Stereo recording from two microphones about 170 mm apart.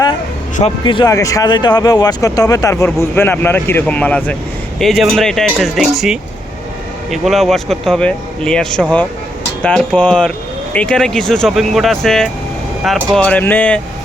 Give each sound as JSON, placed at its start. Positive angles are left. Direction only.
{"t": 0.9, "sound": "speech", "side_deg": 25}